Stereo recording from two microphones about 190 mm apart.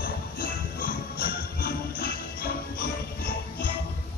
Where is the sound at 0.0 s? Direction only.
50° left (ahead or behind).